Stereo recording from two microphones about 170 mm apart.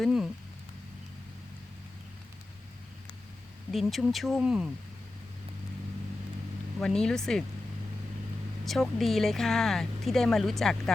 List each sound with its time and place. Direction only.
0.0 s speech: 5° right (ahead or behind)
3.7 s speech: centre (ahead or behind)
6.7 s speech: 5° left (ahead or behind)
8.6 s speech: centre (ahead or behind)